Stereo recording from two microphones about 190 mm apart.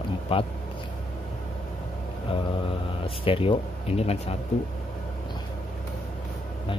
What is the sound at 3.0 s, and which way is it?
Speech, 30° left (ahead or behind).